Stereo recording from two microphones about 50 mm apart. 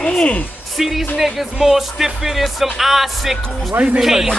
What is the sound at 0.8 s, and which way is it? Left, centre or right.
Speech, centre.